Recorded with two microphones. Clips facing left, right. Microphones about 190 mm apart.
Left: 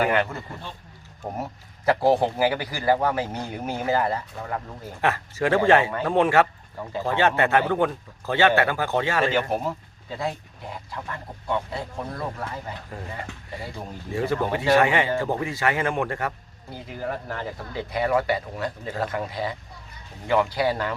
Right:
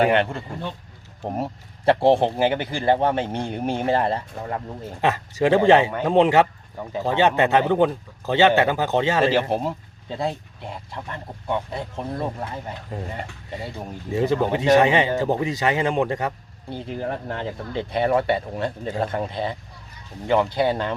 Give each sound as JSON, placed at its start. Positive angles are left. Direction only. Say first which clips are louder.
{"t": 0.0, "sound": "speech", "louder": "right 4 dB", "side_deg": -30}
{"t": 5.0, "sound": "speech", "louder": "right 4 dB", "side_deg": -20}
{"t": 16.6, "sound": "speech", "louder": "right 3 dB", "side_deg": -30}